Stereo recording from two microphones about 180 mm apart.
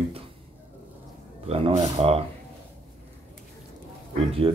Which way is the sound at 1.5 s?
30° right (ahead or behind).